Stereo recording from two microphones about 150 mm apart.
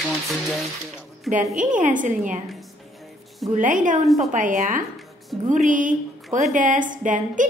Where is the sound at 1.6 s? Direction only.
60° right (ahead or behind).